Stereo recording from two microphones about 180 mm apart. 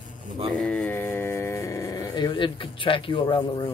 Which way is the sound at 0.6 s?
5° left (ahead or behind).